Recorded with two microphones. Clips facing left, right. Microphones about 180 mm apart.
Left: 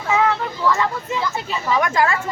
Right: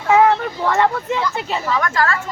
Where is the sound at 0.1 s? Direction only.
55° right (ahead or behind).